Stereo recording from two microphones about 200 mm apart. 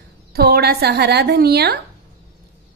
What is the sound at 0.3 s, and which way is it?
Speech, 50° right (ahead or behind).